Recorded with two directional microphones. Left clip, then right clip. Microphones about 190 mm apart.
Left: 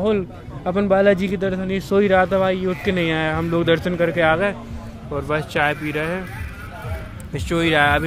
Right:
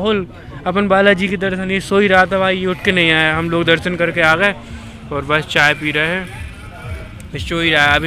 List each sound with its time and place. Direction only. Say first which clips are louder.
0.7 s a man's voice: right 4 dB; 5° left (ahead or behind)
7.3 s speech: right 3 dB; 25° left (ahead or behind)